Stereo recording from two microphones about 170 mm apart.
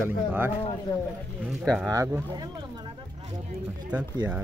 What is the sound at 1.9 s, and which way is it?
Speech, 15° right (ahead or behind).